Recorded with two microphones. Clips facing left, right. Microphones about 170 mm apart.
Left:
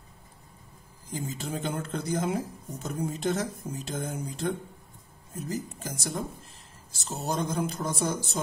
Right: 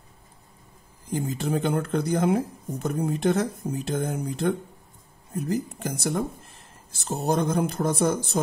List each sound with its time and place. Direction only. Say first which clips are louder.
1.1 s speech: right 7 dB; 60° right (ahead or behind)